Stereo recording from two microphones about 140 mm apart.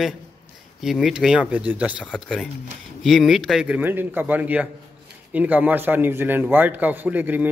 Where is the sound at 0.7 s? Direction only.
Centre (ahead or behind).